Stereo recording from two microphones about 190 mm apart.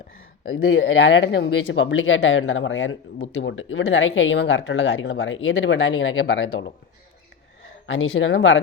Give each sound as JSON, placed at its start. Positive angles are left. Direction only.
{"t": 0.5, "sound": "speech", "side_deg": 70}
{"t": 7.9, "sound": "speech", "side_deg": 90}